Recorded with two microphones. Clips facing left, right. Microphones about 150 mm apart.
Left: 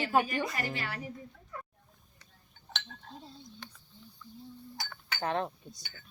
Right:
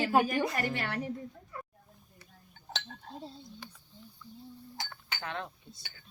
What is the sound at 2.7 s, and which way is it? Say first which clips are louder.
Chink: right 3 dB; 35° right (ahead or behind).